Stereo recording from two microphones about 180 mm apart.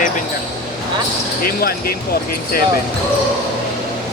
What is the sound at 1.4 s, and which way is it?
Speech, 55° left (ahead or behind).